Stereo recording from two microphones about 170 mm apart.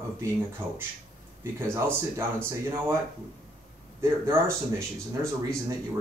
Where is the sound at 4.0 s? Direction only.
15° right (ahead or behind).